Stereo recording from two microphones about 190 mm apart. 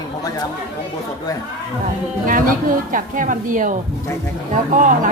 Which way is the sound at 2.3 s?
45° right (ahead or behind).